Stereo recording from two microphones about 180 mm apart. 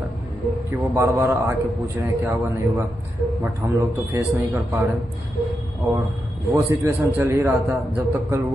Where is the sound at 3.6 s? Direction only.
15° right (ahead or behind).